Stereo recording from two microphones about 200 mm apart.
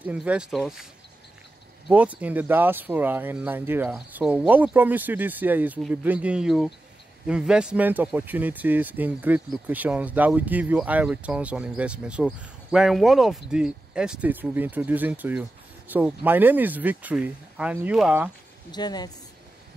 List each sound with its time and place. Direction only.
0.0 s speech: 5° right (ahead or behind)
1.9 s speech: 5° right (ahead or behind)
18.7 s speech: 20° left (ahead or behind)